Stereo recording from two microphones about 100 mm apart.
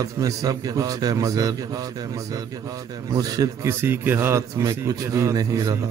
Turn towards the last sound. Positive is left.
turn(degrees=-35)  # may be behind; listen again after turning